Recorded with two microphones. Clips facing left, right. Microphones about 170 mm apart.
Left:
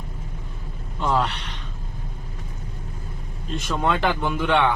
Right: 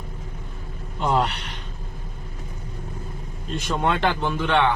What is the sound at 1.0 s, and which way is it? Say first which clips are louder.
Gasp: right 1 dB; 20° right (ahead or behind).